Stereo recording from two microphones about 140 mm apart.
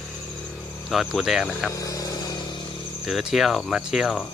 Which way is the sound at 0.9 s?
Centre (ahead or behind).